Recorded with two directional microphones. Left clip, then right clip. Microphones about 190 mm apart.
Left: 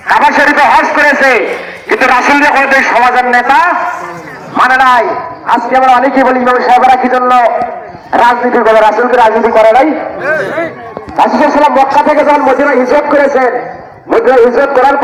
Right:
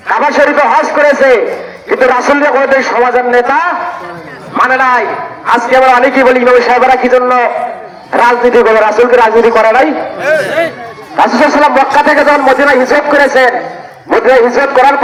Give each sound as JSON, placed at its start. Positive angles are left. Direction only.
{"t": 0.1, "sound": "a man's voice", "side_deg": -60}
{"t": 9.0, "sound": "a man's voice", "side_deg": -35}
{"t": 10.2, "sound": "speech", "side_deg": -85}
{"t": 11.2, "sound": "speech", "side_deg": 5}
{"t": 11.5, "sound": "a man's voice", "side_deg": 20}
{"t": 12.7, "sound": "a man's voice", "side_deg": 30}